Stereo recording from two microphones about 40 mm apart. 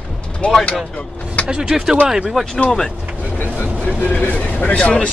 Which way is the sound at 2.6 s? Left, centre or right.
Centre.